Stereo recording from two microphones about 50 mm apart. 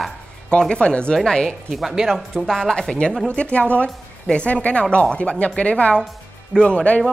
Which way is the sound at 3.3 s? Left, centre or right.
Left.